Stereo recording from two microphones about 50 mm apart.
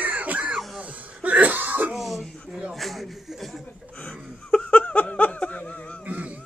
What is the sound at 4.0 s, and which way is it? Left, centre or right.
Laughter, left.